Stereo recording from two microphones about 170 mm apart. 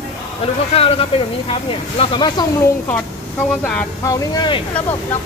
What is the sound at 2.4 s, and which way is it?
Speech, 25° left (ahead or behind).